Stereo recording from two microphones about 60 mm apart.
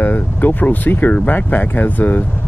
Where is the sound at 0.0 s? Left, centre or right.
Left.